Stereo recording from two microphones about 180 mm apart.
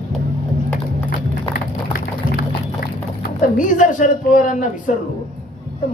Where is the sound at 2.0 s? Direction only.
55° left (ahead or behind).